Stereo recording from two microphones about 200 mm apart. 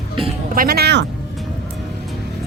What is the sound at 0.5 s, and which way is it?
Speech, 50° right (ahead or behind).